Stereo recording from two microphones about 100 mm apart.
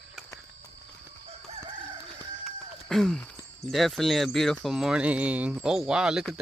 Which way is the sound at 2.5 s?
5° left (ahead or behind).